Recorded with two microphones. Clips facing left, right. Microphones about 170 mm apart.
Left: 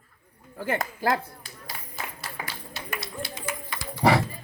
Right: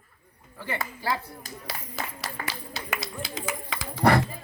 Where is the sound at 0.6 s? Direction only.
50° left (ahead or behind).